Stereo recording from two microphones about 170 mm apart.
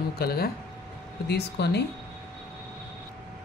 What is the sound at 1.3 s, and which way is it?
Speech, 80° left.